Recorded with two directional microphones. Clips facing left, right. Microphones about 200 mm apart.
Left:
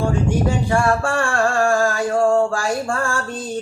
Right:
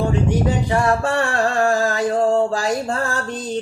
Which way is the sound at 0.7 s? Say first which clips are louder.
Even; 20° right (ahead or behind).